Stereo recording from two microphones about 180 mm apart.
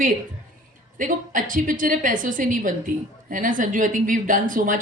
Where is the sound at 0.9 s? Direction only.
45° right (ahead or behind).